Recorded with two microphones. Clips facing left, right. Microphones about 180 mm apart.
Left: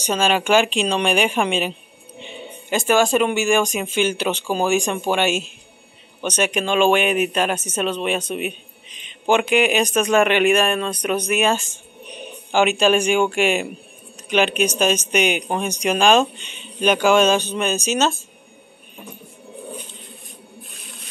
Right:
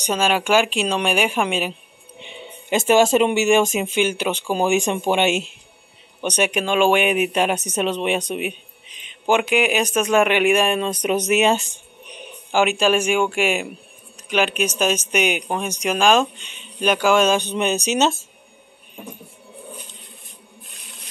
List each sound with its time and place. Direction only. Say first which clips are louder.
0.0 s speech: left 1 dB; 10° right (ahead or behind)
2.1 s speech: left 3 dB; 20° right (ahead or behind)
12.4 s speech: left 1 dB; 5° right (ahead or behind)
17.4 s speech: right 1 dB; 20° right (ahead or behind)